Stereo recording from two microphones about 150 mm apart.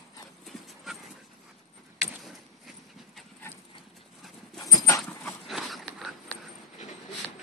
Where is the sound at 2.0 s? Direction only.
Centre (ahead or behind).